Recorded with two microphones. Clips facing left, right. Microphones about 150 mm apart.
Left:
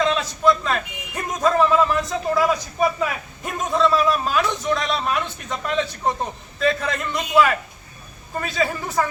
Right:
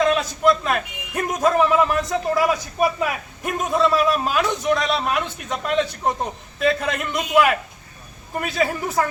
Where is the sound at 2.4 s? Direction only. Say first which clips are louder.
Left 1 dB; 5° right (ahead or behind).